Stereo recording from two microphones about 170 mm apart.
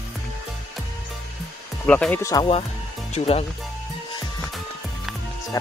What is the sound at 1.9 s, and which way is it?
Speech, 10° left (ahead or behind).